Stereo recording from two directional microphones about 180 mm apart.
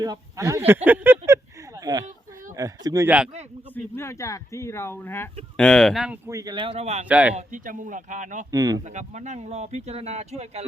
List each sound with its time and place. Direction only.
0.0 s speech: 20° right (ahead or behind)
0.9 s a sound: 10° right (ahead or behind)
3.9 s speech: 15° left (ahead or behind); by 6.1 s centre (ahead or behind)
6.2 s speech: 20° right (ahead or behind); by 7.0 s 35° right (ahead or behind)
7.1 s speech: 5° right (ahead or behind)
7.3 s speech: 45° right (ahead or behind)
8.4 s speech: 20° right (ahead or behind)
8.9 s speech: 40° right (ahead or behind)